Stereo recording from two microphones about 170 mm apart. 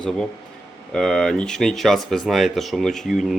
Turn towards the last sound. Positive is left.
turn(degrees=0)  # may be behind; listen again after turning